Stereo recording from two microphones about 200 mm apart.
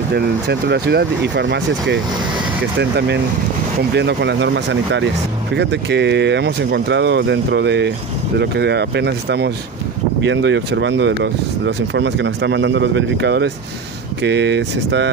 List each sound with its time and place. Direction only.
0.1 s speech: 55° right (ahead or behind)